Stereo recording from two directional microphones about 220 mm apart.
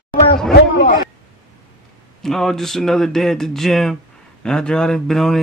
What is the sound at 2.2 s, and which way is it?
Speech, centre (ahead or behind).